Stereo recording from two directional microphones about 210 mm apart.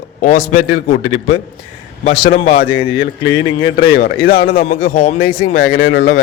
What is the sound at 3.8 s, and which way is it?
A man's voice, 45° left (ahead or behind).